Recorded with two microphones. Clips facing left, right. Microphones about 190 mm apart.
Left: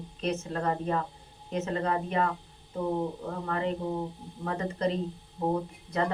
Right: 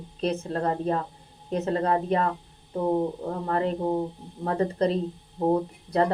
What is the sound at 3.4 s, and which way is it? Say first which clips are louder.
Speech: right 5 dB; 40° right (ahead or behind).